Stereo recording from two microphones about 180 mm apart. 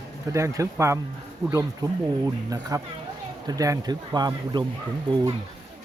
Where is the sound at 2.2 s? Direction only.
20° right (ahead or behind).